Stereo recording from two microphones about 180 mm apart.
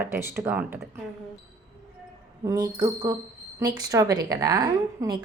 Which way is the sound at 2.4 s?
20° right (ahead or behind).